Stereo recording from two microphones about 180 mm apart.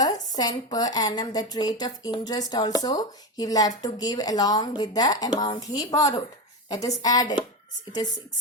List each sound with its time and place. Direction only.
0.0 s speech: 20° left (ahead or behind)